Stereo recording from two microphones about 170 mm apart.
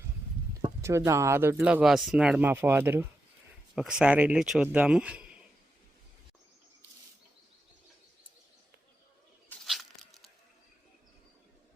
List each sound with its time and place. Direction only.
0.6 s speech: 15° right (ahead or behind)
9.5 s tearing: centre (ahead or behind)